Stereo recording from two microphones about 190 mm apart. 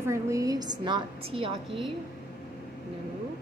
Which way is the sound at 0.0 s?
15° right (ahead or behind).